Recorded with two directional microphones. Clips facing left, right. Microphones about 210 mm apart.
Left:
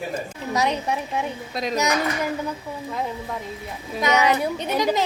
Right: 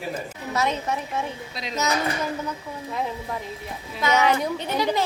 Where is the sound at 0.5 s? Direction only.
15° left (ahead or behind).